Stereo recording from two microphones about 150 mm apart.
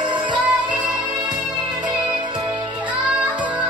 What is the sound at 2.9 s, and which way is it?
Music, 10° right (ahead or behind).